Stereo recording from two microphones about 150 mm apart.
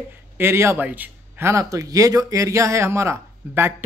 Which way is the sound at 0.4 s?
15° right (ahead or behind).